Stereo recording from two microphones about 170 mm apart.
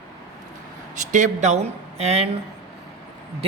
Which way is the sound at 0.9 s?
45° right (ahead or behind).